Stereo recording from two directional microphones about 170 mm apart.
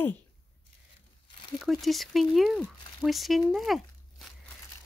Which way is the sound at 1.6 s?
Centre (ahead or behind).